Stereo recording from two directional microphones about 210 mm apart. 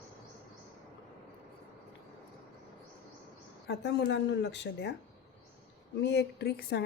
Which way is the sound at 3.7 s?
55° left (ahead or behind).